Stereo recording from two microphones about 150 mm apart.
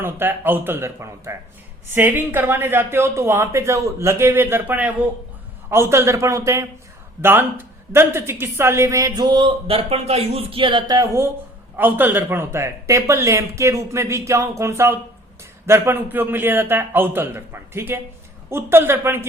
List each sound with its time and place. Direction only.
0.0 s a woman's voice: 15° right (ahead or behind)